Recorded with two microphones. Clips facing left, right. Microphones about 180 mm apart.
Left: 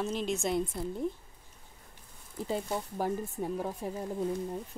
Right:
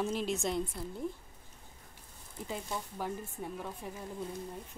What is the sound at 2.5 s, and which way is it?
Speech, 35° left (ahead or behind).